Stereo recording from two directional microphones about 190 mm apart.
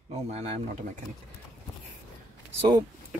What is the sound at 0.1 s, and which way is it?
Speech, 35° right (ahead or behind).